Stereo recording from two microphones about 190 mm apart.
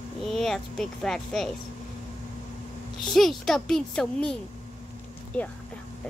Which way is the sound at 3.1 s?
Centre (ahead or behind).